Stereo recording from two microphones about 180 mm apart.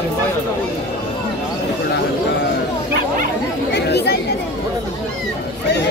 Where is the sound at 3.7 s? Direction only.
65° left (ahead or behind).